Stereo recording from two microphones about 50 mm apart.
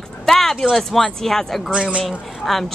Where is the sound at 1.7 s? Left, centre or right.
Right.